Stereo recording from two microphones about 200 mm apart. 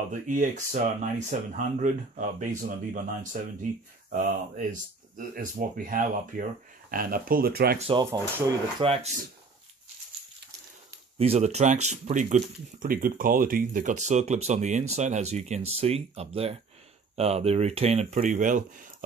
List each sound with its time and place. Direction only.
0.1 s speech: 40° right (ahead or behind)
7.8 s speech: 20° right (ahead or behind)
11.1 s speech: 30° right (ahead or behind)